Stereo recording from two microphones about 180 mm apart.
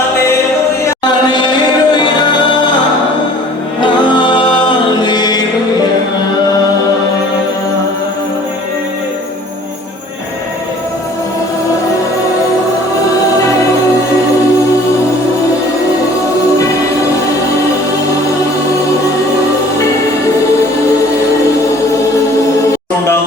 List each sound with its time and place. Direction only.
0.9 s music: 25° left (ahead or behind)
3.8 s music: 25° left (ahead or behind)